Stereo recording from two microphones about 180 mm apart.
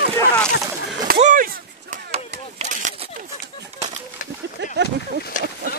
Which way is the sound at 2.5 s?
45° right (ahead or behind).